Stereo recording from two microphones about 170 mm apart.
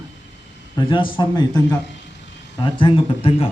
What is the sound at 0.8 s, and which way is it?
A man's voice, 30° left (ahead or behind).